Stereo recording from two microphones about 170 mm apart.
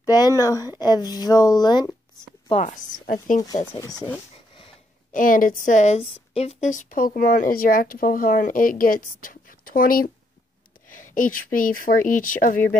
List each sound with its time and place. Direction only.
0.1 s speech: 20° left (ahead or behind)
2.5 s a woman's voice: 45° left (ahead or behind)
3.7 s speech: 25° left (ahead or behind)
5.1 s a woman's voice: 55° left (ahead or behind)